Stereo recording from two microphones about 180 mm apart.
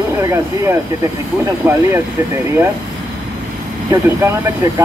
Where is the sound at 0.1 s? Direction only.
15° right (ahead or behind).